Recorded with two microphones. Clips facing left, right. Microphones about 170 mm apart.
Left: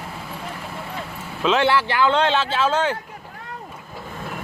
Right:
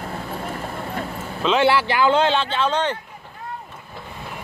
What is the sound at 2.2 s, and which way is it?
Speech, centre (ahead or behind).